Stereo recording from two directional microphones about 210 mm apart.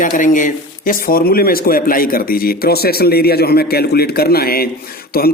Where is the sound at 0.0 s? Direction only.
40° left (ahead or behind).